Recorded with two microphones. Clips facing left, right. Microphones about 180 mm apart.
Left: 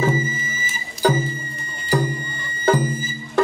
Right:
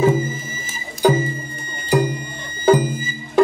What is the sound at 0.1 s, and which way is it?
Music, 5° left (ahead or behind).